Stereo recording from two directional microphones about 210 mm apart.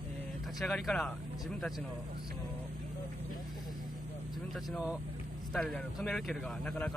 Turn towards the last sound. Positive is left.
turn(degrees=5)  # may be behind; listen again after turning